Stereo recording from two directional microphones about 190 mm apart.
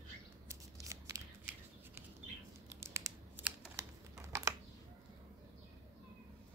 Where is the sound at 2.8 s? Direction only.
15° right (ahead or behind).